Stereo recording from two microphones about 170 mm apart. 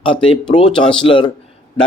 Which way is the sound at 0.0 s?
30° left (ahead or behind).